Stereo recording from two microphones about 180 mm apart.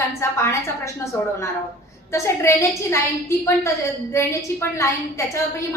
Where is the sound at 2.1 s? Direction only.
15° left (ahead or behind).